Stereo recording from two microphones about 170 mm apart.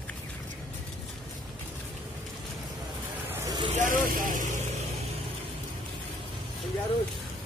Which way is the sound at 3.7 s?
50° right (ahead or behind).